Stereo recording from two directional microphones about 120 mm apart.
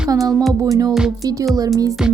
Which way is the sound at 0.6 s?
30° right (ahead or behind).